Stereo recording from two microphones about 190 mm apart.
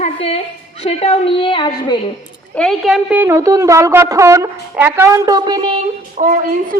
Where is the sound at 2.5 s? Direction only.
5° left (ahead or behind); by 5.8 s 25° right (ahead or behind).